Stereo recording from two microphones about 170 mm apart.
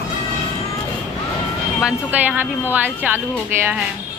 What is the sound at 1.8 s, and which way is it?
Speech, 10° right (ahead or behind).